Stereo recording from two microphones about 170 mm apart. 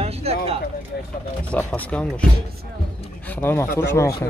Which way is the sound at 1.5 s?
10° left (ahead or behind).